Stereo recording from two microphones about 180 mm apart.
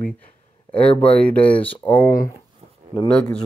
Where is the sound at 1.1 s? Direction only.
5° left (ahead or behind).